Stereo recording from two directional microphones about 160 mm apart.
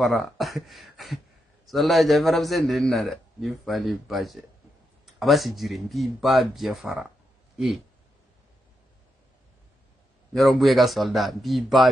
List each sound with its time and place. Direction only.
0.0 s a man's voice: centre (ahead or behind)
10.3 s a man's voice: centre (ahead or behind)